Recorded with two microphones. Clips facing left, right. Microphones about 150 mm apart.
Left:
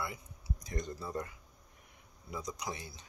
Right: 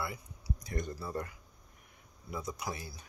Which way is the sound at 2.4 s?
20° left (ahead or behind).